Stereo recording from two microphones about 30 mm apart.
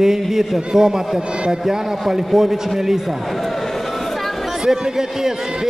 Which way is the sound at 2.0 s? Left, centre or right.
Centre.